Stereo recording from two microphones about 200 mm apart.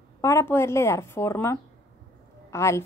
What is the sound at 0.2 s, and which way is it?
A woman's voice, 15° left (ahead or behind).